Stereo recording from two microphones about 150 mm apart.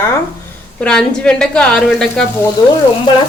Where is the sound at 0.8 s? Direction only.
5° left (ahead or behind).